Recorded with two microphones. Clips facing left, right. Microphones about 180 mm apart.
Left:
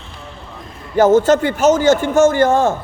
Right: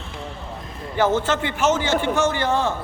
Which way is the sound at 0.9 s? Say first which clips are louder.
Left 9 dB; 45° left (ahead or behind).